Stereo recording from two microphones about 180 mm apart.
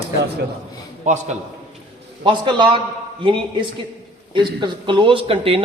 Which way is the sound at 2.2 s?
25° right (ahead or behind).